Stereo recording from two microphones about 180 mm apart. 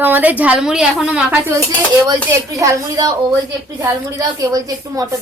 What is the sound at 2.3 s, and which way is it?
A woman's voice, 15° right (ahead or behind).